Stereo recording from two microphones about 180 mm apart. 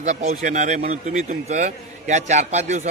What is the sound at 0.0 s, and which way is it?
A man's voice, 40° right (ahead or behind).